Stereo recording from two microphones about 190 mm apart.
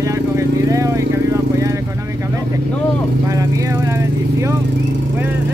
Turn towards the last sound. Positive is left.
turn(degrees=-15)  # may be behind; listen again after turning